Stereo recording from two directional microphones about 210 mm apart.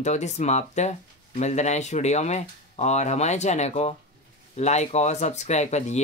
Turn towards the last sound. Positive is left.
turn(degrees=30)  # may be behind; listen again after turning